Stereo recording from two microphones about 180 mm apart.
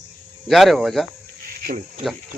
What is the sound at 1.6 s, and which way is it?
Speech, 55° right (ahead or behind).